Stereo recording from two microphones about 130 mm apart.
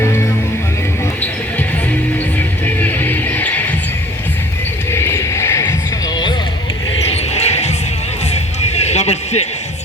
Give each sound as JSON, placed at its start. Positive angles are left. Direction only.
{"t": 0.0, "sound": "music", "side_deg": 20}
{"t": 2.6, "sound": "music", "side_deg": 15}
{"t": 4.9, "sound": "a sound", "side_deg": 20}
{"t": 7.1, "sound": "basketball bounce", "side_deg": 55}
{"t": 8.3, "sound": "music", "side_deg": 55}